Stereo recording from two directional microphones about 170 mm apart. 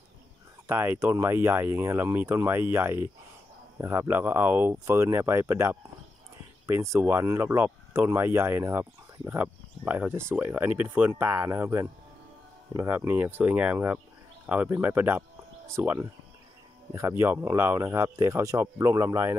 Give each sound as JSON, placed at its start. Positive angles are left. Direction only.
{"t": 0.7, "sound": "speech", "side_deg": -15}